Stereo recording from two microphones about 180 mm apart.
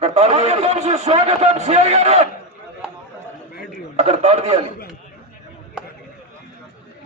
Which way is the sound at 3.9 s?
40° right (ahead or behind).